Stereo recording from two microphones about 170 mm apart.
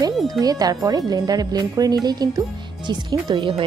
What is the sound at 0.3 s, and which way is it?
A woman's voice, 20° right (ahead or behind).